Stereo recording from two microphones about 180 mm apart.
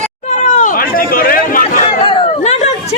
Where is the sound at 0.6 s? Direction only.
50° left (ahead or behind).